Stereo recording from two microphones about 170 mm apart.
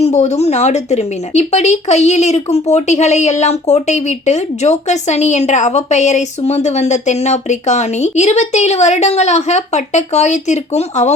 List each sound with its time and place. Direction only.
0.0 s speech: 40° left (ahead or behind)